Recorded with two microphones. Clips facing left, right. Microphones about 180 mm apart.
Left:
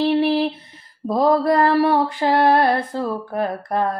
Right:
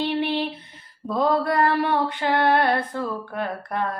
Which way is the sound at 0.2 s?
35° left (ahead or behind).